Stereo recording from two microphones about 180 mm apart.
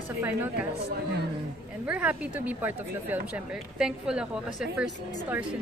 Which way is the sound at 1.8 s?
5° right (ahead or behind).